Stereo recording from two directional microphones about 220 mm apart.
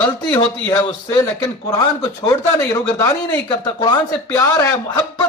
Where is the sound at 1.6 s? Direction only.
15° left (ahead or behind).